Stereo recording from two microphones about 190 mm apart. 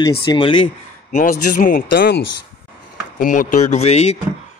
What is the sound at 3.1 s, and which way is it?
Speech, 45° left (ahead or behind).